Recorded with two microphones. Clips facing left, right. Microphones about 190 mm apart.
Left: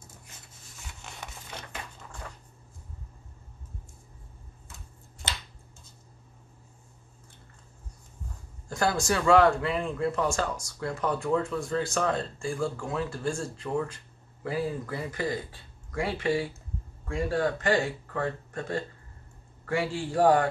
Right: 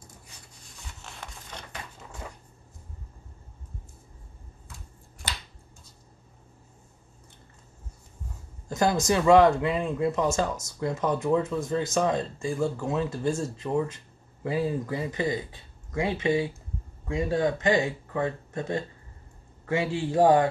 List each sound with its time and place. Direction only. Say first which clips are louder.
0.8 s a sound: even; centre (ahead or behind)
5.2 s finger snapping: even; 25° left (ahead or behind)
8.6 s speech: right 3 dB; 20° right (ahead or behind)